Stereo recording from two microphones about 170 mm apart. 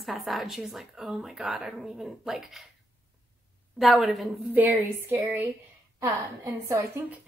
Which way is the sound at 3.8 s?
Centre (ahead or behind).